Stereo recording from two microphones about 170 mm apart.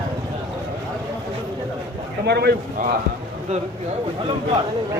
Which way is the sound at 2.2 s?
75° right (ahead or behind).